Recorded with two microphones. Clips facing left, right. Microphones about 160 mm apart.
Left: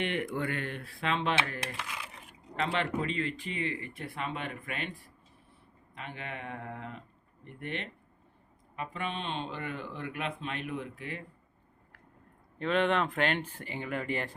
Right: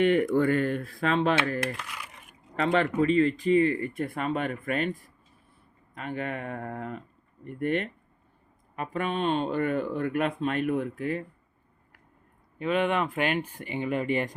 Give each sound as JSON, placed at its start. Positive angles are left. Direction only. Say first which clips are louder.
{"t": 0.0, "sound": "speech", "louder": "right 11 dB", "side_deg": -40}
{"t": 2.7, "sound": "speech", "louder": "right 12 dB", "side_deg": -40}
{"t": 12.5, "sound": "speech", "louder": "right 2 dB", "side_deg": -5}